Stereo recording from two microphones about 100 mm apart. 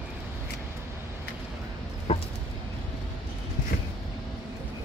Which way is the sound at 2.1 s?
90° left.